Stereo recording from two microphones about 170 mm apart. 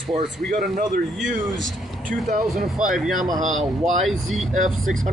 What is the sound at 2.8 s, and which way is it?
Speech, centre (ahead or behind).